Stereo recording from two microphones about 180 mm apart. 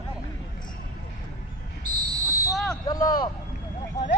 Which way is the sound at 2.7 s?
20° left (ahead or behind).